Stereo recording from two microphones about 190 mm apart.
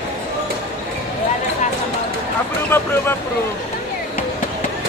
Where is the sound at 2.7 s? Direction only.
15° left (ahead or behind).